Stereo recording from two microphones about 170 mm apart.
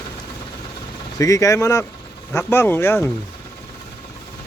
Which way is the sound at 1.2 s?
20° left (ahead or behind).